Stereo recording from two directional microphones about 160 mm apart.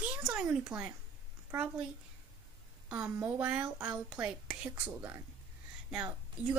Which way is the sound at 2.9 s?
5° right (ahead or behind).